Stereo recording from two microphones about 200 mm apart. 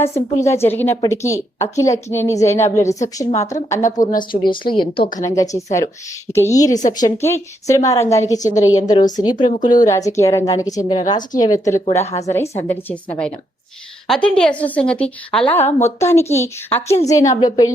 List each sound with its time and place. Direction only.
0.0 s a woman's voice: 15° left (ahead or behind)